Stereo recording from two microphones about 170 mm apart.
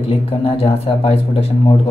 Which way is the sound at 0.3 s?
35° left (ahead or behind).